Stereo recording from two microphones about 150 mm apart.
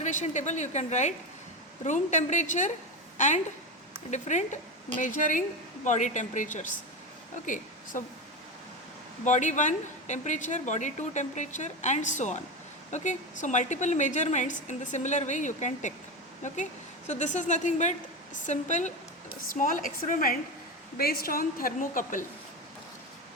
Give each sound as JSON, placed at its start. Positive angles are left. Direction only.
{"t": 0.0, "sound": "a woman's voice", "side_deg": 55}
{"t": 9.2, "sound": "a woman's voice", "side_deg": 55}
{"t": 21.0, "sound": "a woman's voice", "side_deg": 80}